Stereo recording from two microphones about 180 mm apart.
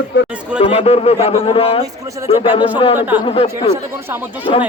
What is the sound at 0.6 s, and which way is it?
A man's voice, 30° left (ahead or behind).